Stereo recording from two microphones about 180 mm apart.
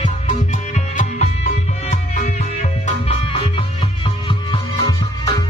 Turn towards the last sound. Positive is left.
turn(degrees=20)  # may be behind; listen again after turning